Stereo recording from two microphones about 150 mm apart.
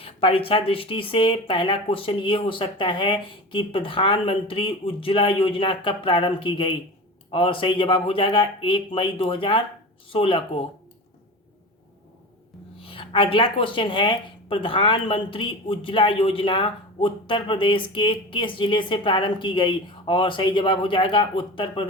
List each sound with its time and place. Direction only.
0.0 s speech: 40° left (ahead or behind)
12.8 s speech: 35° left (ahead or behind)